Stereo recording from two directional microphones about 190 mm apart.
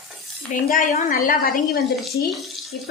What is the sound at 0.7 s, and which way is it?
A woman's voice, 45° left (ahead or behind).